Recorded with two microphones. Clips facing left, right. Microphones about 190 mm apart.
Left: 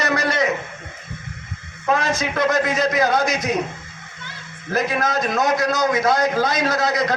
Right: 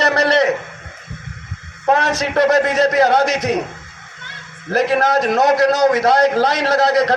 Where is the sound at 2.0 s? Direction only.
70° right (ahead or behind).